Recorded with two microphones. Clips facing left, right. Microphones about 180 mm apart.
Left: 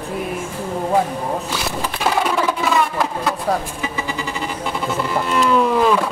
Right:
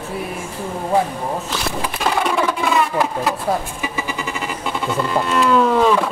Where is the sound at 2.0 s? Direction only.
5° left (ahead or behind).